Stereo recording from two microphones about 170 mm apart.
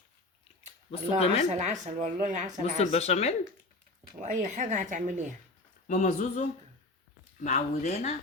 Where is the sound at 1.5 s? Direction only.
45° right (ahead or behind).